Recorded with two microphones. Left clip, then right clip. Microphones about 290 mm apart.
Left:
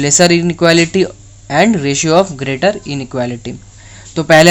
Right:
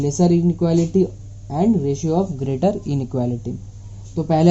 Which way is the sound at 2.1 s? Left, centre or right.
Left.